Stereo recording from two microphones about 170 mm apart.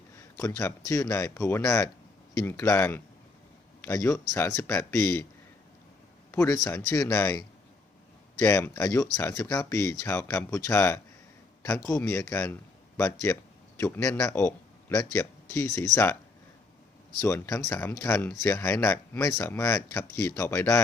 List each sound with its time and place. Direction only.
0.4 s speech: 20° left (ahead or behind)
6.3 s speech: 15° left (ahead or behind)
17.2 s speech: 15° left (ahead or behind)